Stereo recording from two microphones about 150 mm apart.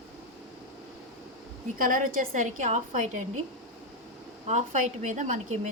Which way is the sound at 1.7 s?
65° right (ahead or behind).